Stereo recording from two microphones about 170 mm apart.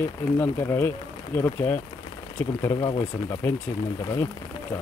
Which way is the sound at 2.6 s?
25° left (ahead or behind).